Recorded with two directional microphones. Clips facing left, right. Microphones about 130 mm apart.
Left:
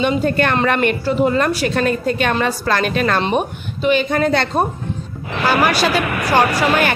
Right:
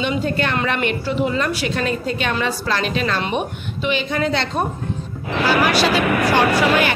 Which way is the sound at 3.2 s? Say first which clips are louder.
Left 4 dB; 35° left (ahead or behind).